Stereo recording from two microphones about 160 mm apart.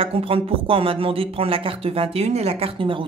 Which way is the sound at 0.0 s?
35° right (ahead or behind).